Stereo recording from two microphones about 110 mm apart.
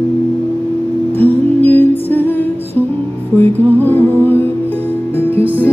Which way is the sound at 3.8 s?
20° left (ahead or behind).